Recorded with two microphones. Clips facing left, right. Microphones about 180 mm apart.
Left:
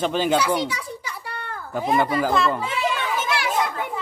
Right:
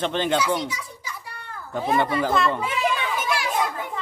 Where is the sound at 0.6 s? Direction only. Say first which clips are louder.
Left 4 dB; 65° left (ahead or behind).